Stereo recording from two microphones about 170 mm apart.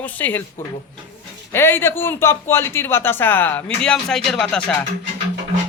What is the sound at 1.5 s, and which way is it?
A man's voice, 15° left (ahead or behind).